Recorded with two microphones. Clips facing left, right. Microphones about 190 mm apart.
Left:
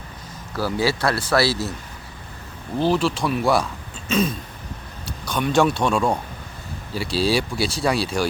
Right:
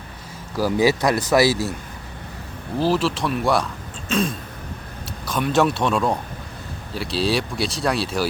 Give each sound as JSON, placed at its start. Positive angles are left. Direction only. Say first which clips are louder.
{"t": 0.5, "sound": "speech", "louder": "right 4 dB", "side_deg": -15}
{"t": 2.7, "sound": "speech", "louder": "even", "side_deg": 0}